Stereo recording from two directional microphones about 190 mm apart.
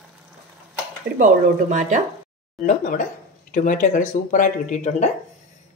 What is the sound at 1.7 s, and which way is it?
Speech, 40° right (ahead or behind).